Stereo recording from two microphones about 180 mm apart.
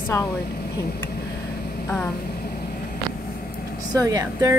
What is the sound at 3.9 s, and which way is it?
Speech, 20° right (ahead or behind).